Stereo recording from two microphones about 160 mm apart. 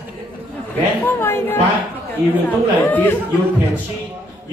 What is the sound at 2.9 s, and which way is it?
Speech, 10° left (ahead or behind).